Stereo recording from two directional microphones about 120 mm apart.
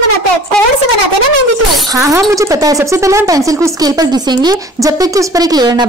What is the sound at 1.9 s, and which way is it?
Speech, 25° right (ahead or behind).